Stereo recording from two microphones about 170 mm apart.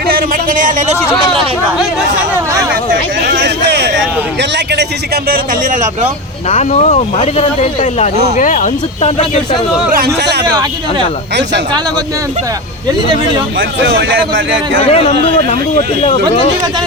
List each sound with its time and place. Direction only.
0.1 s speech: 50° right (ahead or behind)
1.3 s speech: centre (ahead or behind)
2.9 s a man's voice: 80° right
6.5 s speech: 40° left (ahead or behind)
10.2 s speech: 80° right
10.4 s speech: 25° right (ahead or behind)
13.6 s a man's voice: 90° right
14.8 s speech: 35° left (ahead or behind)